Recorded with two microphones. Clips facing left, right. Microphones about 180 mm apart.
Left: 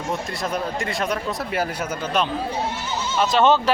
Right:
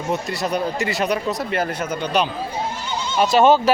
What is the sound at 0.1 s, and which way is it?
Speech, centre (ahead or behind).